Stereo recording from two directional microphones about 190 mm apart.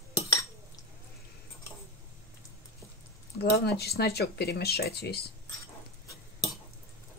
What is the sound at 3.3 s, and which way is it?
Speech, 60° left (ahead or behind).